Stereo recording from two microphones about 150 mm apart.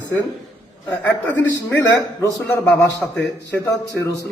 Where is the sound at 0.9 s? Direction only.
10° left (ahead or behind).